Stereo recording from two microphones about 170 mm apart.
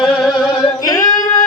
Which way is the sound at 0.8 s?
20° left (ahead or behind).